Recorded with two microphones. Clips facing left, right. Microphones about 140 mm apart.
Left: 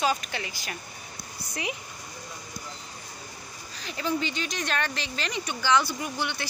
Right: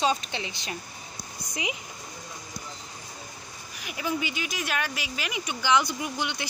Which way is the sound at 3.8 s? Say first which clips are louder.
Left 1 dB; 15° right (ahead or behind).